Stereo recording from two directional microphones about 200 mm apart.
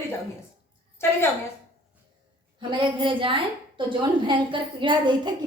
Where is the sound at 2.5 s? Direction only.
25° right (ahead or behind).